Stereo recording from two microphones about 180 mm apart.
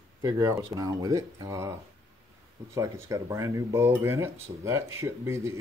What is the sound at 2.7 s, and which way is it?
Speech, 15° right (ahead or behind).